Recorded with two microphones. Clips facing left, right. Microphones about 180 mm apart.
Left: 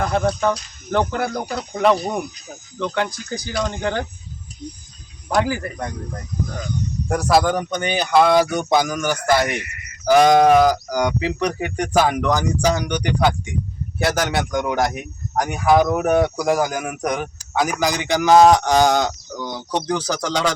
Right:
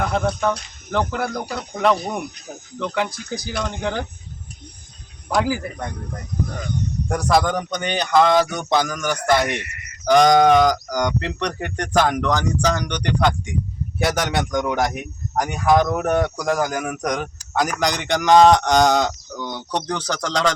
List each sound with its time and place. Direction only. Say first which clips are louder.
0.0 s speech: left 2 dB; centre (ahead or behind)
5.3 s speech: left 1 dB; centre (ahead or behind)
6.3 s speech: right 1 dB; 55° right (ahead or behind)
7.1 s speech: left 2 dB; 5° left (ahead or behind)